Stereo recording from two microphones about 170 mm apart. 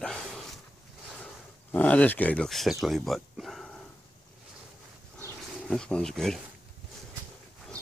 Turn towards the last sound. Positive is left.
turn(degrees=5)  # may be behind; listen again after turning